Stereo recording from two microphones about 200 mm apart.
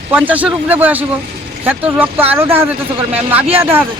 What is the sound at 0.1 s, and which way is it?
Speech, 10° right (ahead or behind).